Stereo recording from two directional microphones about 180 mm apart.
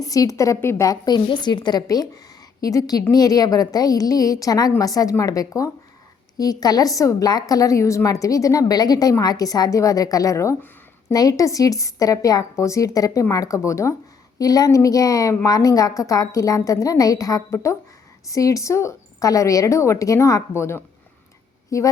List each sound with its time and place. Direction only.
0.0 s a woman's voice: 20° left (ahead or behind)